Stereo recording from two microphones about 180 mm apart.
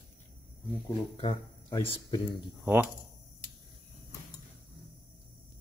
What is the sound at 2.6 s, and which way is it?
Speech, 10° right (ahead or behind).